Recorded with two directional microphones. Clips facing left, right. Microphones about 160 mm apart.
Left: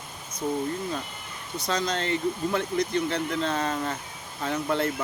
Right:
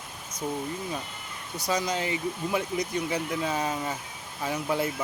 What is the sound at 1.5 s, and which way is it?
Speech, 10° right (ahead or behind).